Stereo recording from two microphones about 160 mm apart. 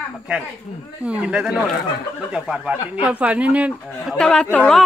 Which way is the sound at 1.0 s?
5° right (ahead or behind).